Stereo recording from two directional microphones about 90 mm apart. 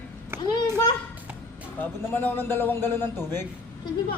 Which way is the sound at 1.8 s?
20° left (ahead or behind).